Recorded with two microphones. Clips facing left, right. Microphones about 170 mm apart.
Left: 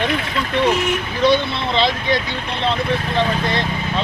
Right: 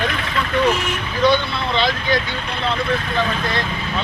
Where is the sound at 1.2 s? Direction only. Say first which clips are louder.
Left 1 dB; 30° left (ahead or behind).